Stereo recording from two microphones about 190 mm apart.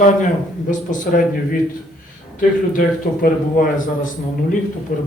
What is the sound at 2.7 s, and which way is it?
Speech, 45° left (ahead or behind).